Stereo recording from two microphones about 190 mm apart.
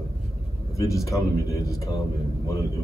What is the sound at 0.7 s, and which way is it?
Speech, 15° left (ahead or behind).